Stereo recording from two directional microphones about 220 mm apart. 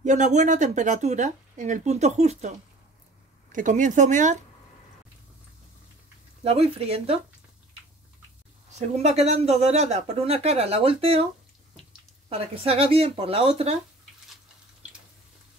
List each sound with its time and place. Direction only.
0.0 s speech: 35° right (ahead or behind)
3.5 s speech: 35° right (ahead or behind)
6.4 s speech: 25° right (ahead or behind)
8.7 s speech: 30° right (ahead or behind)
12.3 s speech: 25° right (ahead or behind)
14.3 s a sound: 5° right (ahead or behind)